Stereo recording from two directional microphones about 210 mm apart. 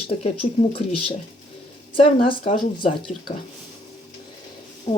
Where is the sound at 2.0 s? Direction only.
25° left (ahead or behind).